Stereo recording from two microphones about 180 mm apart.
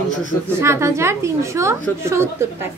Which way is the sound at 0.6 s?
15° right (ahead or behind).